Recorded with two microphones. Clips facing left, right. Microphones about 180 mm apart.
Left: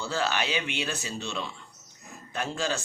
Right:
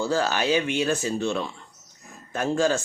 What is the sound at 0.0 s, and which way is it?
Speech, 45° right (ahead or behind).